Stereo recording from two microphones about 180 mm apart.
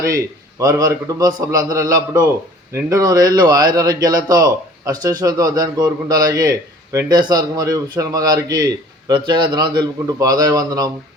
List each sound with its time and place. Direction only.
0.6 s a man's voice: 20° right (ahead or behind)